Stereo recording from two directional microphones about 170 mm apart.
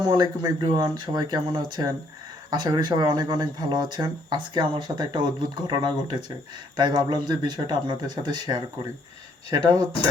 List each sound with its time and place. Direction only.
0.0 s speech: 25° right (ahead or behind)